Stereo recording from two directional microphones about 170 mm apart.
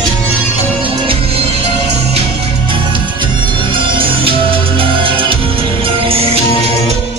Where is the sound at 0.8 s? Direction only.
30° right (ahead or behind).